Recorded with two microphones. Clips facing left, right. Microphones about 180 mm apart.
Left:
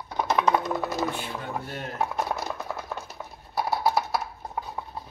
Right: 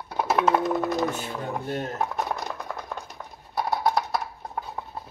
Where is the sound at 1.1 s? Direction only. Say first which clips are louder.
Right 2 dB; 45° right (ahead or behind).